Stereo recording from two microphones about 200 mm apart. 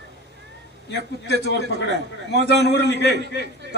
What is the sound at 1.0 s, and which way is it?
A man's voice, 55° right (ahead or behind).